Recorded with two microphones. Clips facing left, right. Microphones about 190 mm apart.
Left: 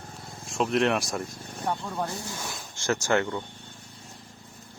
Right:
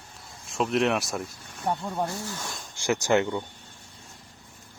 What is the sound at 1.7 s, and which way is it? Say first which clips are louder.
Speech: right 2 dB; 15° right (ahead or behind).